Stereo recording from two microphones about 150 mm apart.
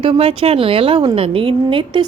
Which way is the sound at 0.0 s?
35° right (ahead or behind).